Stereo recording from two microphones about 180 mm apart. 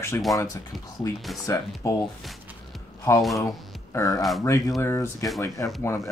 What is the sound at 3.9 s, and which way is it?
Speech, 20° left (ahead or behind).